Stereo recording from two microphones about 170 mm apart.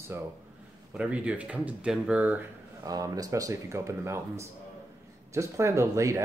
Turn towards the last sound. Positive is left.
turn(degrees=-15)  # may be behind; listen again after turning